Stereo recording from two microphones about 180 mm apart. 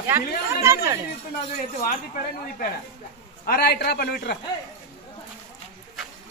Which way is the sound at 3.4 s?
60° left (ahead or behind).